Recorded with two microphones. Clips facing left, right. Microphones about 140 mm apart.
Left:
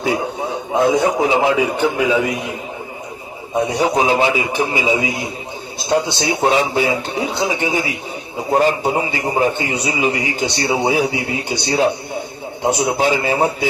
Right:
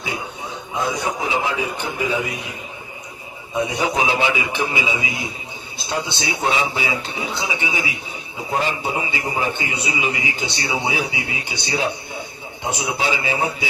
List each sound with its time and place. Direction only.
0.7 s a man's voice: 65° left (ahead or behind)
3.7 s a man's voice: 40° left (ahead or behind)